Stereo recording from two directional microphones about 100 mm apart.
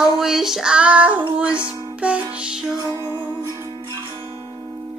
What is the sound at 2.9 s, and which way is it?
Music, 45° right (ahead or behind).